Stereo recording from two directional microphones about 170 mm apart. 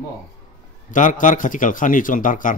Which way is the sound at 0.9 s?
50° left (ahead or behind).